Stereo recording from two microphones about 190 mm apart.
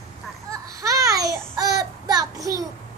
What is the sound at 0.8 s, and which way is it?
A child's voice, 15° right (ahead or behind).